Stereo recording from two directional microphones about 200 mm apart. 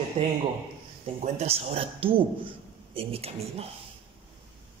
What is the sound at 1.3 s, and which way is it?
A man's voice, 30° right (ahead or behind).